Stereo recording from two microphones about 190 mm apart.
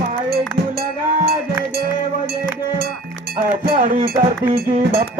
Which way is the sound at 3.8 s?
45° right (ahead or behind).